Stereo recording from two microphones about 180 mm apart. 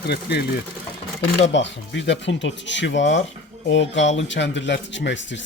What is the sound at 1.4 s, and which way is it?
A man's voice, 85° left.